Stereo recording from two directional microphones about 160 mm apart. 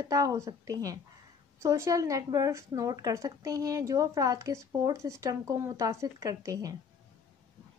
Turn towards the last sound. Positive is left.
turn(degrees=-20)  # may be behind; listen again after turning